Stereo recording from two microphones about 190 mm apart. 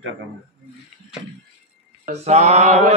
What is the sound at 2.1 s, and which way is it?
Mantra, 35° right (ahead or behind).